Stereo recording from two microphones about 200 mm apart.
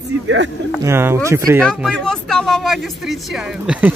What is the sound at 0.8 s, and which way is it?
Speech, 10° right (ahead or behind).